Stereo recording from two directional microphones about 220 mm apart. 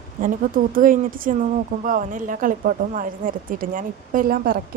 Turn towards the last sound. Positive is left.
turn(degrees=-40)  # may be behind; listen again after turning